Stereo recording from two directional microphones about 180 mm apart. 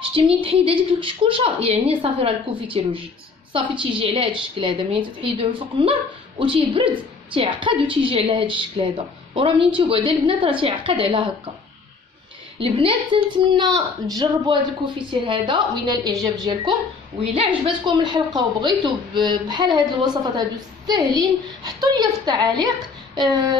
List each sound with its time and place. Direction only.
0.4 s a woman's voice: 30° right (ahead or behind)
12.5 s a woman's voice: 30° right (ahead or behind)